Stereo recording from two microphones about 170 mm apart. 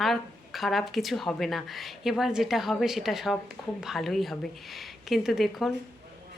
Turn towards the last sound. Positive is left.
turn(degrees=0)  # may be behind; listen again after turning